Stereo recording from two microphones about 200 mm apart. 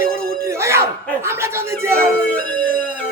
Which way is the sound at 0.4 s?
15° right (ahead or behind).